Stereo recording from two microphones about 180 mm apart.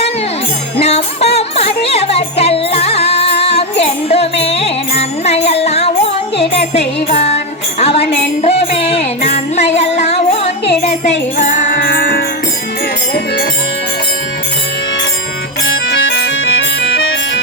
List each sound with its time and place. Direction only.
0.8 s music: 35° left (ahead or behind); by 12.2 s 55° left (ahead or behind)
15.9 s music: 90° left